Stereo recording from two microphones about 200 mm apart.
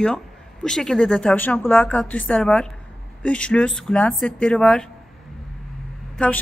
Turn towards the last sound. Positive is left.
turn(degrees=5)  # may be behind; listen again after turning